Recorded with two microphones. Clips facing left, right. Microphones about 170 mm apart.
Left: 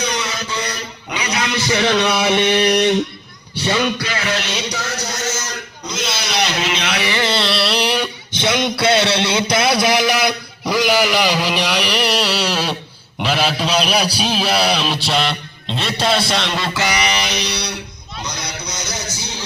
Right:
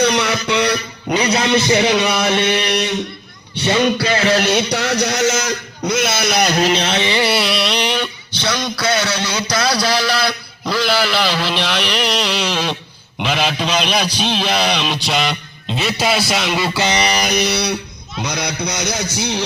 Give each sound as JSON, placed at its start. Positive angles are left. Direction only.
{"t": 0.0, "sound": "a sound", "side_deg": -65}
{"t": 1.1, "sound": "a man's voice", "side_deg": -35}
{"t": 2.1, "sound": "a man's voice", "side_deg": 10}
{"t": 2.6, "sound": "a sound", "side_deg": 45}
{"t": 3.5, "sound": "a sound", "side_deg": -25}
{"t": 3.8, "sound": "music", "side_deg": -35}
{"t": 4.4, "sound": "a sound", "side_deg": -60}
{"t": 8.4, "sound": "a man's voice", "side_deg": 20}
{"t": 16.3, "sound": "music", "side_deg": -5}
{"t": 16.7, "sound": "a man's voice", "side_deg": -20}
{"t": 17.0, "sound": "mantra", "side_deg": -40}
{"t": 18.3, "sound": "a man's voice", "side_deg": -65}